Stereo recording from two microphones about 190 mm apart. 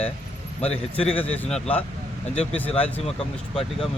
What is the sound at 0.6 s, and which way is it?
Speech, 35° left (ahead or behind).